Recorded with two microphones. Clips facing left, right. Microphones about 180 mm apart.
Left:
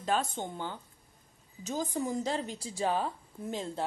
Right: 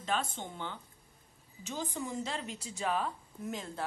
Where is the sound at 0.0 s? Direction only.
40° left (ahead or behind).